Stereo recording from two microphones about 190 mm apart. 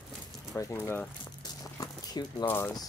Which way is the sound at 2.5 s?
15° left (ahead or behind).